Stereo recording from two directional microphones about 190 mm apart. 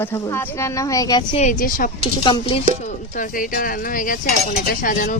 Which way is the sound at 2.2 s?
30° left (ahead or behind).